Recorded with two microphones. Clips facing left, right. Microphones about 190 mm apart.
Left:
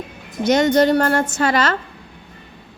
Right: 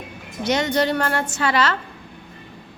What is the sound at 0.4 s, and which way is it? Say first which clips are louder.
A woman's voice: left 6 dB; 45° left (ahead or behind).